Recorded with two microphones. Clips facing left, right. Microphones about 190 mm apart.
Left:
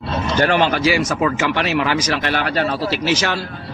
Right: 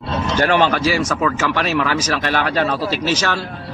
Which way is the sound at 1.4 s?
45° right (ahead or behind).